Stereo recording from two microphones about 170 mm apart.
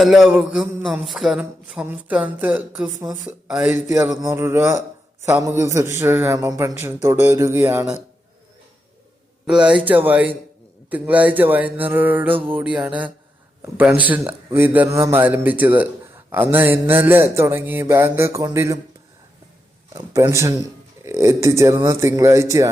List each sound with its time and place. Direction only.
0.0 s a man's voice: centre (ahead or behind)
9.5 s a man's voice: 5° right (ahead or behind)
19.9 s speech: 20° right (ahead or behind)